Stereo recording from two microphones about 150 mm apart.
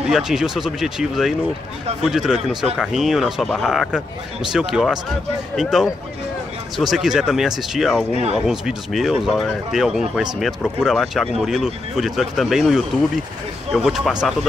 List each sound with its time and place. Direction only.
0.0 s speech: 5° right (ahead or behind)
8.1 s speech: 45° right (ahead or behind)
8.5 s speech: centre (ahead or behind)